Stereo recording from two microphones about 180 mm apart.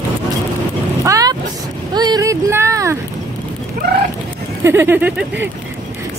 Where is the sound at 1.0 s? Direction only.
20° right (ahead or behind).